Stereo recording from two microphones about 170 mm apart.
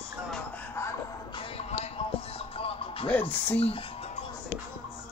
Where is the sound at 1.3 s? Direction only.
30° left (ahead or behind).